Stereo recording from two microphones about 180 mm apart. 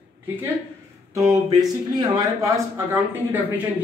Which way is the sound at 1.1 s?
20° right (ahead or behind).